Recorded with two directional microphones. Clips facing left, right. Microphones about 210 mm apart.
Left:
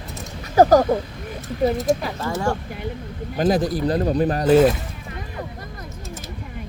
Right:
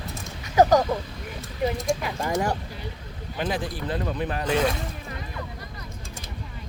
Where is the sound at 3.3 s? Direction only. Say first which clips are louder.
Left 9 dB; 40° left (ahead or behind).